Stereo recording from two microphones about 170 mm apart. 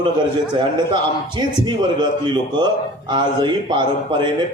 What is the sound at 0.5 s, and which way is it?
A man's voice, 25° right (ahead or behind).